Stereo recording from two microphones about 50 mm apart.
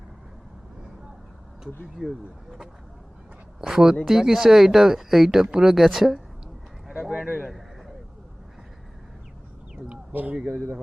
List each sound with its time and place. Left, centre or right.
1.6 s speech: centre
7.3 s speech: centre
9.7 s speech: right